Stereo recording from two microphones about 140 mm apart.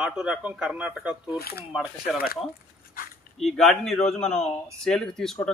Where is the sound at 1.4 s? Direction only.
90° left.